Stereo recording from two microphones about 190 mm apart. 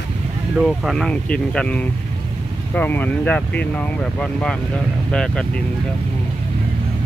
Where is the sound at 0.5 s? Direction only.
Centre (ahead or behind).